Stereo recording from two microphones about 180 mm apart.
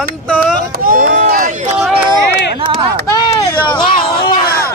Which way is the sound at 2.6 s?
25° right (ahead or behind).